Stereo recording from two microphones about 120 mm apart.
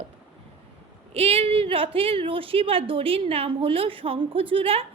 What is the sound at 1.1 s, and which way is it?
A woman's voice, 55° right (ahead or behind).